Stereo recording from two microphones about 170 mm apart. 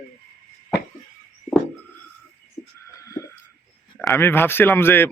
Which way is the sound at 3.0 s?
20° left (ahead or behind).